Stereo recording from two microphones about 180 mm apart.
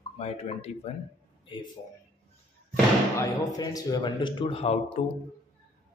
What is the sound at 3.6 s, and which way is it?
A man's voice, 20° left (ahead or behind).